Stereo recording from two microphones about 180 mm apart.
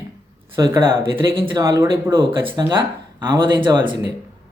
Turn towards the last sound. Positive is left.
turn(degrees=-25)  # may be behind; listen again after turning